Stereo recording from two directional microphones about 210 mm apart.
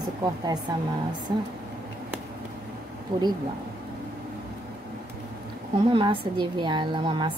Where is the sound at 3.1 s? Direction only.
20° right (ahead or behind).